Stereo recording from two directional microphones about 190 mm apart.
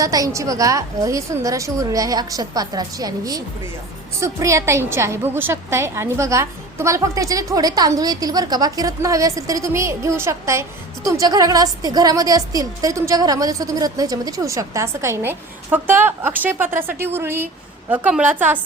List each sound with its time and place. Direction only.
0.0 s a woman's voice: 20° right (ahead or behind)